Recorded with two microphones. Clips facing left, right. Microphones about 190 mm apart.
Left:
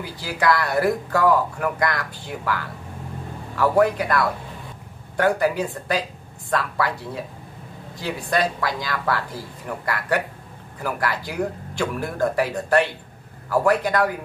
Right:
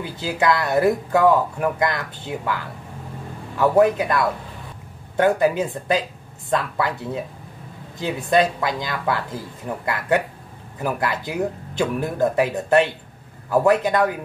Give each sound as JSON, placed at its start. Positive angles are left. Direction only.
{"t": 0.0, "sound": "speech", "side_deg": -20}
{"t": 3.5, "sound": "speech", "side_deg": -20}
{"t": 8.0, "sound": "speech", "side_deg": -20}